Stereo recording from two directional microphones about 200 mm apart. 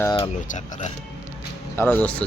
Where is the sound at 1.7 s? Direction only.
10° left (ahead or behind).